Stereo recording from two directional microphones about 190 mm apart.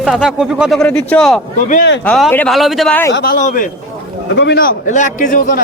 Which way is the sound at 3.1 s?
55° left (ahead or behind).